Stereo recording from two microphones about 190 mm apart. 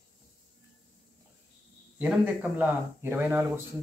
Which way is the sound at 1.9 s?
5° right (ahead or behind).